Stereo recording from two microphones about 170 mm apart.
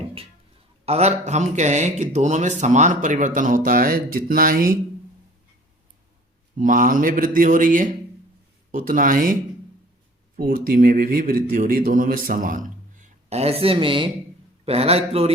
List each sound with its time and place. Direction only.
0.9 s a man's voice: 40° right (ahead or behind); by 4.8 s 55° right (ahead or behind)
6.6 s a man's voice: 50° right (ahead or behind); by 15.3 s 35° right (ahead or behind)